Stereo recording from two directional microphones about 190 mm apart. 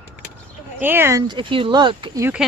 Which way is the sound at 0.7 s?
10° right (ahead or behind).